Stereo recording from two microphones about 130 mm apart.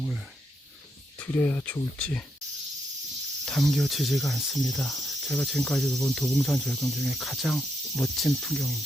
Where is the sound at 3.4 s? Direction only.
5° left (ahead or behind).